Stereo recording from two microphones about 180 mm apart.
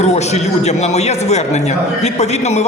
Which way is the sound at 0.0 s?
40° left (ahead or behind).